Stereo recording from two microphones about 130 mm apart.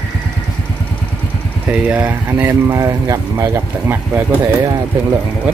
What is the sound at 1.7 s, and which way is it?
Speech, 10° right (ahead or behind).